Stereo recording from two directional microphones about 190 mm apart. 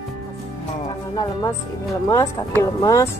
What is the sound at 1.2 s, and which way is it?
Speech, 15° left (ahead or behind).